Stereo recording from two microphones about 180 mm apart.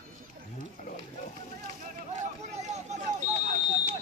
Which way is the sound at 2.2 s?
40° right (ahead or behind).